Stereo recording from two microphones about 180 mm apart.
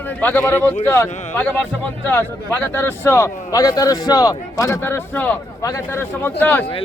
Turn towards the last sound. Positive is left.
turn(degrees=10)  # may be behind; listen again after turning